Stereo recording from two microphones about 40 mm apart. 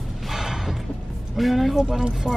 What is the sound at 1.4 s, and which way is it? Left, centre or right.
Speech, centre.